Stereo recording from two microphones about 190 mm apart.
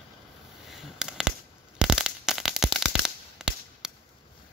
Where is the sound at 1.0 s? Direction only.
5° right (ahead or behind).